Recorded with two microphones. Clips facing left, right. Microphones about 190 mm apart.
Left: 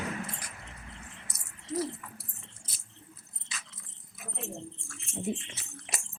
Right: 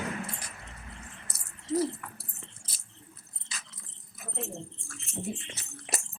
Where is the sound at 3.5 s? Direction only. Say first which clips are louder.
Even; 35° right (ahead or behind).